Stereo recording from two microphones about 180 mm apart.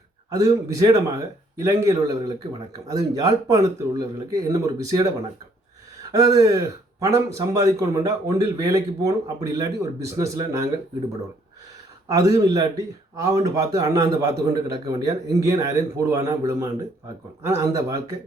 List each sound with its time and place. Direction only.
0.3 s speech: 20° right (ahead or behind)
12.0 s a man's voice: 20° right (ahead or behind)